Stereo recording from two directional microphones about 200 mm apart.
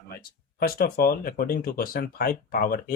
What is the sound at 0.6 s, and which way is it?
Speech, 50° left (ahead or behind).